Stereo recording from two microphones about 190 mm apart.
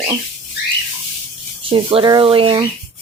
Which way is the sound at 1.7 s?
25° right (ahead or behind).